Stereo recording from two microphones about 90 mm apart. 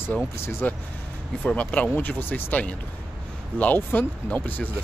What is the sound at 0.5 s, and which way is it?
Speech, 25° left (ahead or behind).